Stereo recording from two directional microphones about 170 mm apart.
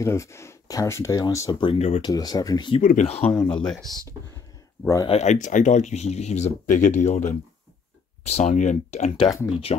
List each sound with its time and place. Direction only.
0.0 s speech: 15° left (ahead or behind)
1.6 s speech: 35° left (ahead or behind)
2.0 s speech: 25° left (ahead or behind)
2.8 s speech: 50° left (ahead or behind)
3.2 s speech: 10° left (ahead or behind)
5.0 s speech: 40° left (ahead or behind)